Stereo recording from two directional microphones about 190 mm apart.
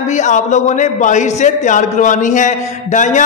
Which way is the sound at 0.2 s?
40° left (ahead or behind).